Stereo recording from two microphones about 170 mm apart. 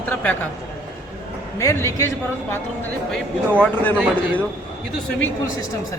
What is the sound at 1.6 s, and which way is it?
Speech, 15° left (ahead or behind).